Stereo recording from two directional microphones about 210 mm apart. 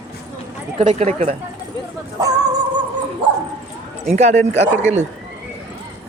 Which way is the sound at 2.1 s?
15° right (ahead or behind).